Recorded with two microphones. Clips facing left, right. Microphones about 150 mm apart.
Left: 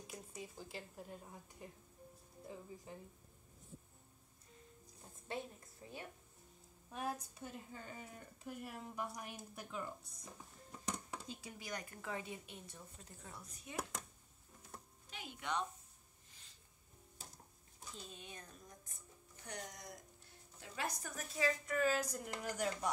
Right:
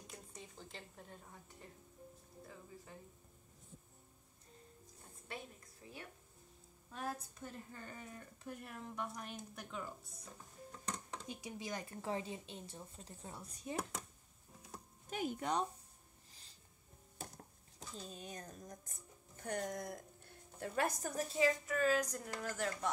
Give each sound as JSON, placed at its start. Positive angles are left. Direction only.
{"t": 0.0, "sound": "a woman's voice", "side_deg": 5}
{"t": 5.8, "sound": "a woman's voice", "side_deg": 25}
{"t": 10.9, "sound": "a sound", "side_deg": 10}
{"t": 11.2, "sound": "speech", "side_deg": -20}
{"t": 15.0, "sound": "speech", "side_deg": -45}
{"t": 17.2, "sound": "a sound", "side_deg": -60}
{"t": 17.9, "sound": "speech", "side_deg": -40}
{"t": 21.1, "sound": "a woman's voice", "side_deg": -35}
{"t": 21.6, "sound": "a woman's voice", "side_deg": 0}